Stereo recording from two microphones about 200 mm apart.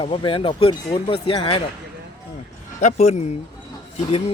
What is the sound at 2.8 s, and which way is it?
Speech, 35° left (ahead or behind).